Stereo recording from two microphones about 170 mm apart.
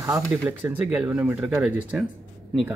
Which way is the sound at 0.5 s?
10° right (ahead or behind).